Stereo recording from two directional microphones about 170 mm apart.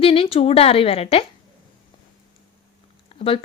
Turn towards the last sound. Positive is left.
turn(degrees=35)  # may be behind; listen again after turning